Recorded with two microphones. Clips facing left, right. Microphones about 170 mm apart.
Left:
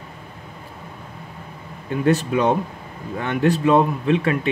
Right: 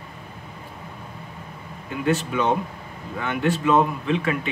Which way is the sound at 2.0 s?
40° left (ahead or behind).